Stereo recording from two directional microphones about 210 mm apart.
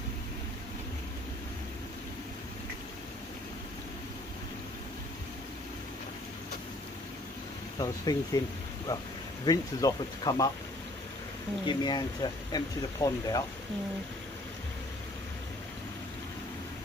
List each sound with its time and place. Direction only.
7.8 s speech: 15° left (ahead or behind)
9.4 s speech: 20° left (ahead or behind)
11.6 s speech: 20° left (ahead or behind)